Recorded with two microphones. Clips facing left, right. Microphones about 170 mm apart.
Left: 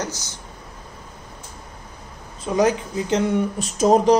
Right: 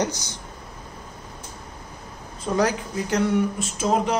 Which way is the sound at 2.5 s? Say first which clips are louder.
Left 3 dB; 20° left (ahead or behind).